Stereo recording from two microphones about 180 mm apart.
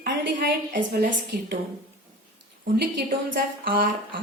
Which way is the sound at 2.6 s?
55° right (ahead or behind).